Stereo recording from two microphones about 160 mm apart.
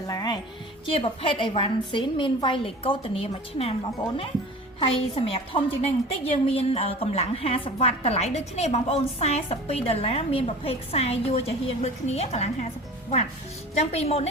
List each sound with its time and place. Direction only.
0.1 s music: 25° left (ahead or behind)
0.9 s a woman's voice: 35° left (ahead or behind)
4.8 s a woman's voice: 35° left (ahead or behind)
13.7 s a woman's voice: 40° left (ahead or behind)